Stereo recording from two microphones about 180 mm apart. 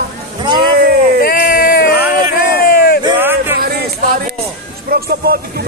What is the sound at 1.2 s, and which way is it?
Speech, 55° left (ahead or behind).